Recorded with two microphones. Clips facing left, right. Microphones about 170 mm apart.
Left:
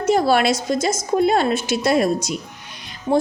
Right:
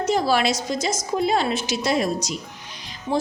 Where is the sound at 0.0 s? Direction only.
55° left (ahead or behind).